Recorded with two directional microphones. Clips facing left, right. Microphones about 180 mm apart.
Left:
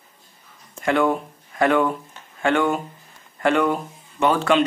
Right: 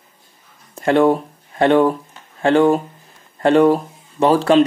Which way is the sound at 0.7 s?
35° right (ahead or behind).